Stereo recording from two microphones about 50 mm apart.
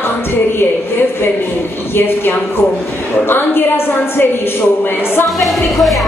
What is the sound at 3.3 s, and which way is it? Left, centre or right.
Speech, left.